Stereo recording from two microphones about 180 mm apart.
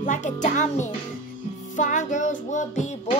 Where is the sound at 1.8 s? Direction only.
45° left (ahead or behind).